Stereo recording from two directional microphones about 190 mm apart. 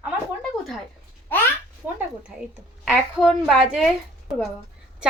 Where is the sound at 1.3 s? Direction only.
10° left (ahead or behind).